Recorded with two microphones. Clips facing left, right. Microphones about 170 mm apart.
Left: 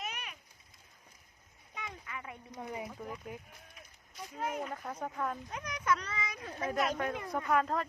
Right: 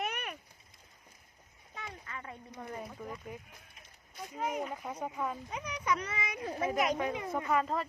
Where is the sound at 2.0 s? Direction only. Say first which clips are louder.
Even; 15° left (ahead or behind).